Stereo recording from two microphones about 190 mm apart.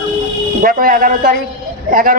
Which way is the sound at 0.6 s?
50° right (ahead or behind).